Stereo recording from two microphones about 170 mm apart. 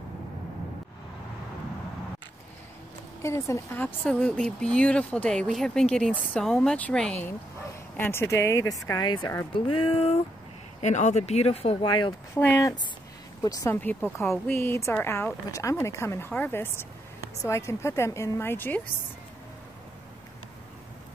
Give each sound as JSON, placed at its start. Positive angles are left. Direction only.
{"t": 3.2, "sound": "speech", "side_deg": 15}
{"t": 12.4, "sound": "speech", "side_deg": 15}